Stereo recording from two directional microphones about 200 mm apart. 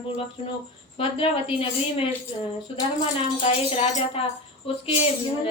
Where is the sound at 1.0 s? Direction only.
30° left (ahead or behind).